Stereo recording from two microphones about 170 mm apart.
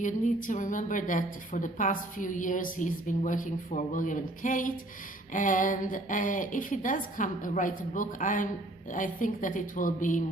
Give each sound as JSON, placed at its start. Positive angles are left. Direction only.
{"t": 0.0, "sound": "a woman's voice", "side_deg": 50}